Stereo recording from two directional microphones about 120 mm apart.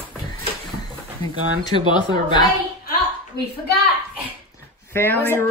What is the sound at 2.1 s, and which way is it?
Speech, 40° left (ahead or behind).